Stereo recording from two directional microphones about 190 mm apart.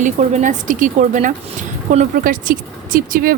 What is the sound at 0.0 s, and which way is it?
Speech, 40° right (ahead or behind).